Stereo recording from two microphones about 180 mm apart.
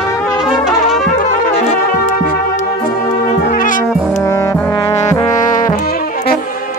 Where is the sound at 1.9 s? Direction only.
50° left (ahead or behind).